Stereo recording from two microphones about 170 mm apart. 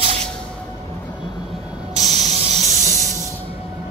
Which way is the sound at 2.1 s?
40° right (ahead or behind).